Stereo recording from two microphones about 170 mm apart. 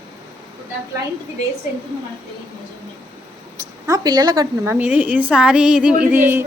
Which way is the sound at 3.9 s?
20° right (ahead or behind).